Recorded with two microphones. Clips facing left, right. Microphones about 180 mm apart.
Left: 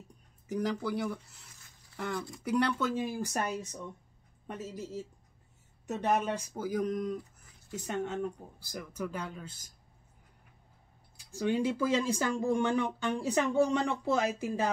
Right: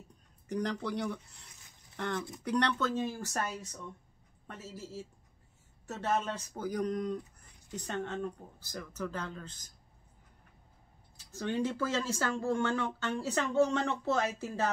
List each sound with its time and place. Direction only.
0.5 s speech: 5° left (ahead or behind)
11.1 s speech: 10° left (ahead or behind)